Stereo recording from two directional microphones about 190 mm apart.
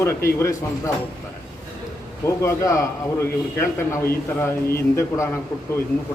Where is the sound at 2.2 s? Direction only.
15° left (ahead or behind).